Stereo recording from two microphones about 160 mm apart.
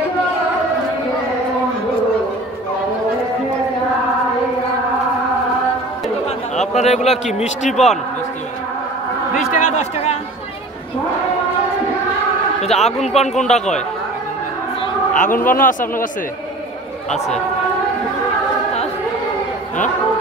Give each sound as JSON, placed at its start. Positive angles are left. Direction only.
{"t": 6.5, "sound": "a sound", "side_deg": 45}
{"t": 7.3, "sound": "a man's voice", "side_deg": 50}
{"t": 9.3, "sound": "a man's voice", "side_deg": 50}
{"t": 12.7, "sound": "a man's voice", "side_deg": 40}
{"t": 15.1, "sound": "a man's voice", "side_deg": 55}